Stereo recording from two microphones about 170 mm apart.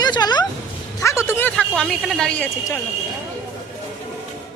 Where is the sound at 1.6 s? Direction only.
5° left (ahead or behind).